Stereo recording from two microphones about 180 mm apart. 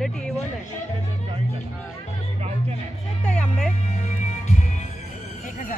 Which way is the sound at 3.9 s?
40° left (ahead or behind).